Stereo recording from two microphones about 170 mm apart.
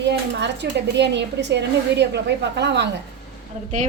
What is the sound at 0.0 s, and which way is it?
Speech, 90° right.